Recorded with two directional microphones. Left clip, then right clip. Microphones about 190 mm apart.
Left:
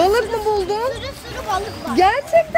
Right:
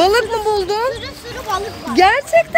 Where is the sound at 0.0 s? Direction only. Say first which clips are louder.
Right 2 dB; 10° right (ahead or behind).